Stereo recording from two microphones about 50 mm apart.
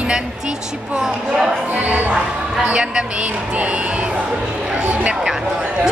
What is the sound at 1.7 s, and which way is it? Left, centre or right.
Music, right.